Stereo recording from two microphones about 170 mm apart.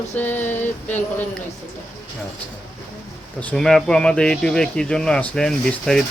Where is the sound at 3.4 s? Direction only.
5° left (ahead or behind).